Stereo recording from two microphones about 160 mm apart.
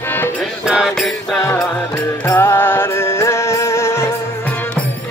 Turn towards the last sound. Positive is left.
turn(degrees=15)  # may be behind; listen again after turning